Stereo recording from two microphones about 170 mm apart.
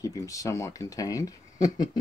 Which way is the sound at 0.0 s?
20° left (ahead or behind).